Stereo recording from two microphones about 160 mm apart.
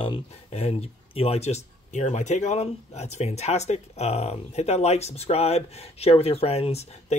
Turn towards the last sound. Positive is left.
turn(degrees=40)  # may be behind; listen again after turning